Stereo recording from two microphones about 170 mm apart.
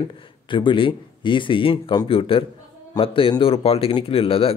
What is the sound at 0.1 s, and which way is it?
Speech, 30° left (ahead or behind).